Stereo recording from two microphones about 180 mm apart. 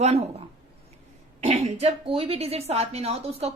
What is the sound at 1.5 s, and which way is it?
A woman's voice, 35° right (ahead or behind).